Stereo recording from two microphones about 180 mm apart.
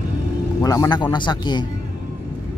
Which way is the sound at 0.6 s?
20° left (ahead or behind).